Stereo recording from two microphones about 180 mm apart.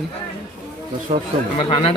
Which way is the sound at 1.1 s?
40° right (ahead or behind).